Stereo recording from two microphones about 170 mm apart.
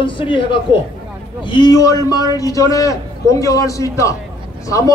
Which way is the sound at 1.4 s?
25° left (ahead or behind).